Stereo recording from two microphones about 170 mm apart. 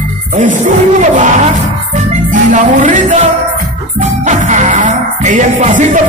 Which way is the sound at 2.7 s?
45° right (ahead or behind).